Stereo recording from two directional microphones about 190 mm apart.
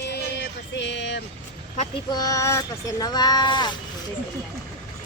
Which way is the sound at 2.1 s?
20° left (ahead or behind).